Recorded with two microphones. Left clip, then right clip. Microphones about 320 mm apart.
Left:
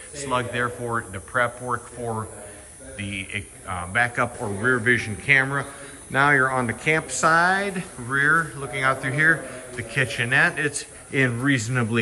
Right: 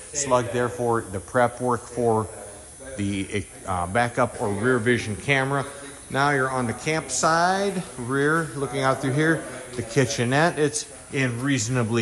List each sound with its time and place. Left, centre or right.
0.3 s speech: centre